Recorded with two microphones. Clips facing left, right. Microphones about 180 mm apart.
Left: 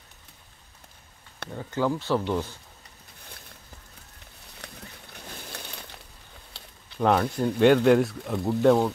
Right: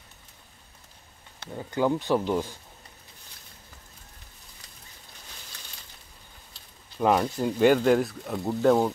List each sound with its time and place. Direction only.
1.5 s speech: 10° right (ahead or behind)
4.6 s a sound: 65° left (ahead or behind)
7.0 s speech: 5° right (ahead or behind)